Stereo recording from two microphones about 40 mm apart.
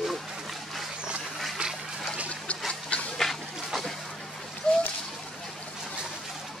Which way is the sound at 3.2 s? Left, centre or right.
Centre.